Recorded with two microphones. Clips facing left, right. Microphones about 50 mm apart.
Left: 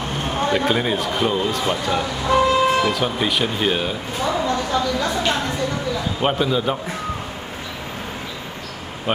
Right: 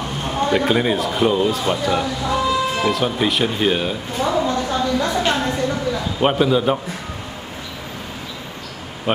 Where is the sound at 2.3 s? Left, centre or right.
Left.